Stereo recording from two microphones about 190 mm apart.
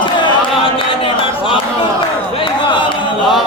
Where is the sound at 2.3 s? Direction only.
25° left (ahead or behind).